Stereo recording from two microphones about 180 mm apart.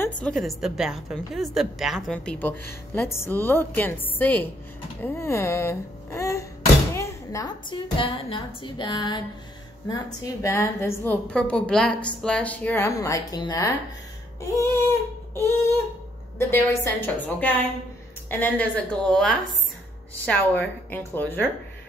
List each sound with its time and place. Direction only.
0.0 s a woman's voice: 5° left (ahead or behind); by 9.2 s 25° left (ahead or behind)
10.2 s a woman's voice: 15° left (ahead or behind)